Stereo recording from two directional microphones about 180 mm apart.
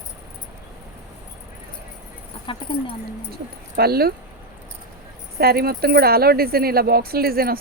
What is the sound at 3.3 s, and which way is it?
Speech, 60° right (ahead or behind).